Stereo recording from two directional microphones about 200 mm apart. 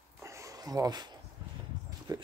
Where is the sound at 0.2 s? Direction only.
15° right (ahead or behind).